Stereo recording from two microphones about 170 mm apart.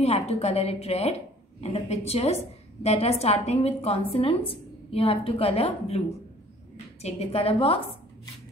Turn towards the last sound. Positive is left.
turn(degrees=35)  # may be behind; listen again after turning